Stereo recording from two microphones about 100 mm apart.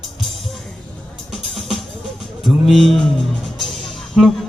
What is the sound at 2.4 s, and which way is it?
Speech, centre (ahead or behind).